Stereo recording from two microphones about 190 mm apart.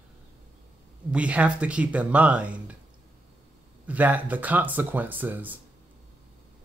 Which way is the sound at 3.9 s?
10° right (ahead or behind).